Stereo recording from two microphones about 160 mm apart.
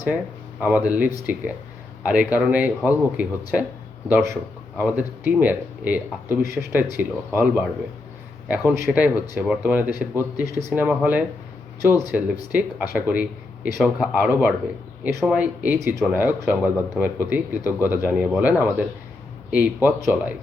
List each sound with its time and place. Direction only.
0.6 s speech: 10° right (ahead or behind)